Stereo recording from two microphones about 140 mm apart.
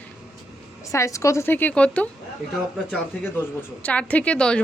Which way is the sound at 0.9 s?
20° left (ahead or behind).